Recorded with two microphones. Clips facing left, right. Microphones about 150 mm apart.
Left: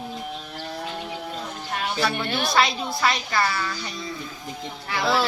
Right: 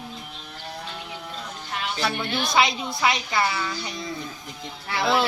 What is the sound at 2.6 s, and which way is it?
Speech, 20° right (ahead or behind).